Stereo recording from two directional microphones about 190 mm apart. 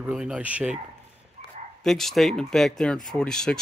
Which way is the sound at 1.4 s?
35° right (ahead or behind).